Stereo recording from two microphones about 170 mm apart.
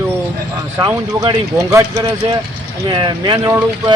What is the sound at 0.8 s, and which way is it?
A man's voice, 25° right (ahead or behind).